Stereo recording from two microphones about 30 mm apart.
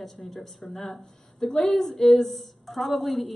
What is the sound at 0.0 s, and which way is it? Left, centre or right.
A woman's voice, centre.